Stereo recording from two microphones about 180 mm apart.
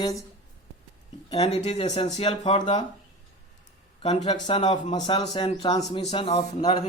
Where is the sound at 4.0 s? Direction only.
35° left (ahead or behind).